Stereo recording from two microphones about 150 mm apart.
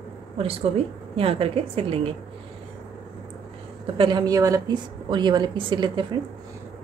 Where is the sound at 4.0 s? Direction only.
30° right (ahead or behind).